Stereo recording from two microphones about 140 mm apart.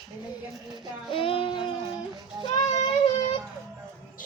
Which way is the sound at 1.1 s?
40° left (ahead or behind).